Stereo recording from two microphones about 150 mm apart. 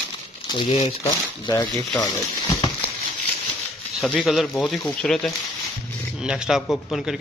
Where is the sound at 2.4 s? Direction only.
30° left (ahead or behind).